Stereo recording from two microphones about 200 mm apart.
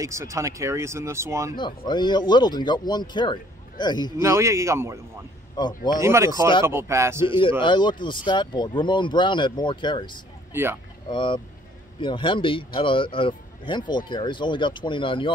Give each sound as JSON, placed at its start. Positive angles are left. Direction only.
{"t": 0.0, "sound": "speech", "side_deg": -15}
{"t": 1.6, "sound": "speech", "side_deg": 20}
{"t": 4.2, "sound": "speech", "side_deg": -15}
{"t": 5.7, "sound": "speech", "side_deg": 45}
{"t": 5.9, "sound": "speech", "side_deg": -15}
{"t": 7.2, "sound": "speech", "side_deg": 25}
{"t": 10.5, "sound": "speech", "side_deg": -10}
{"t": 11.1, "sound": "speech", "side_deg": 25}